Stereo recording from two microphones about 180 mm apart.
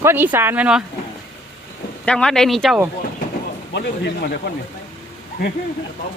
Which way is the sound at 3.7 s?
65° left (ahead or behind).